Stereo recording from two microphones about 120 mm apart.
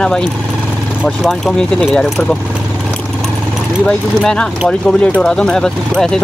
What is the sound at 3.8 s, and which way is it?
Speech, 5° left (ahead or behind).